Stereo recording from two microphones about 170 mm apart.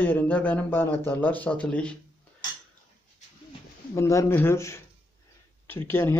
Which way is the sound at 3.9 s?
20° left (ahead or behind).